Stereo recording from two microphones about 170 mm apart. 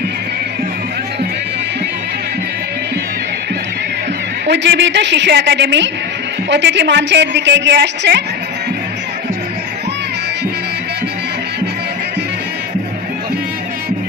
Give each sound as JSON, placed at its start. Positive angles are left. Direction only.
{"t": 4.5, "sound": "a woman's voice", "side_deg": -90}